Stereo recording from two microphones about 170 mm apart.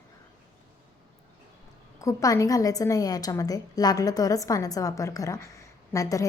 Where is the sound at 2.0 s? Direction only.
20° left (ahead or behind).